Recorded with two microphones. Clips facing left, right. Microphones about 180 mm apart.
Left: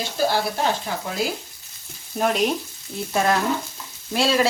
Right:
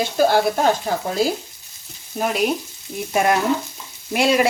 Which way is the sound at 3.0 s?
15° right (ahead or behind).